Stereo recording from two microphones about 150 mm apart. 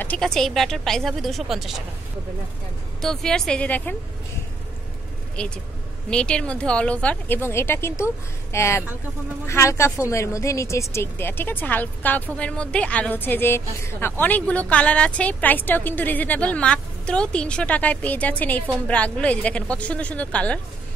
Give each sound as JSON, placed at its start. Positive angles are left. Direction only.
{"t": 0.0, "sound": "a woman's voice", "side_deg": 5}
{"t": 3.0, "sound": "a woman's voice", "side_deg": 5}
{"t": 5.4, "sound": "a woman's voice", "side_deg": 10}